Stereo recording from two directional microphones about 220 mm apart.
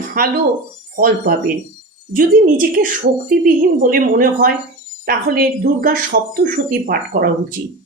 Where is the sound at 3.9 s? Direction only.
40° right (ahead or behind).